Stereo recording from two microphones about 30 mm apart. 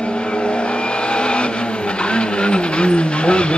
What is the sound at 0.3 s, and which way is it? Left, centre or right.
Vehicle, left.